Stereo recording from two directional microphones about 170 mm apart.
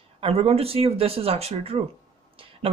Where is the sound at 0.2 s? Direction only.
35° right (ahead or behind).